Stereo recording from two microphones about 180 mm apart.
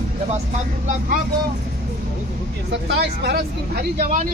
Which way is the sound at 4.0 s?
45° right (ahead or behind).